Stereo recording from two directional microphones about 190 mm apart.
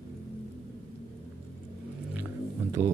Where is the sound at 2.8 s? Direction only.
10° right (ahead or behind).